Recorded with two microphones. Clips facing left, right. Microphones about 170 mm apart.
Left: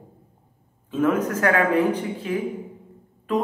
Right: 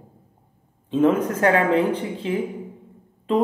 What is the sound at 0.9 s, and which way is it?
A man's voice, 25° right (ahead or behind).